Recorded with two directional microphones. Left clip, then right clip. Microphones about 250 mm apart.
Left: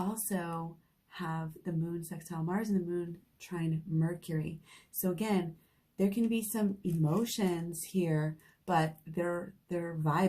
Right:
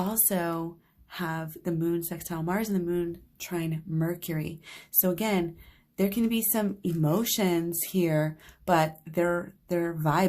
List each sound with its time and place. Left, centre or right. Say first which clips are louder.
0.1 s speech: right 8 dB; right